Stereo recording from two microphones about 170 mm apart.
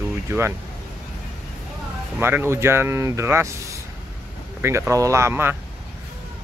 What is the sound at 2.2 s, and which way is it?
Speech, 15° right (ahead or behind).